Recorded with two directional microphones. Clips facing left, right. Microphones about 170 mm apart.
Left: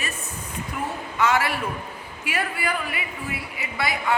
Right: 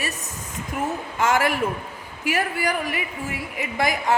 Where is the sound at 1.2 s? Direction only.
45° right (ahead or behind).